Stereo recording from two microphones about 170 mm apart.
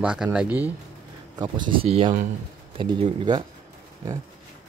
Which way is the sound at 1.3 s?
25° right (ahead or behind).